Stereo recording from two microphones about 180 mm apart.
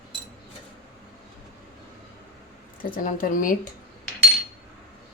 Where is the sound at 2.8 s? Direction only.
50° left (ahead or behind).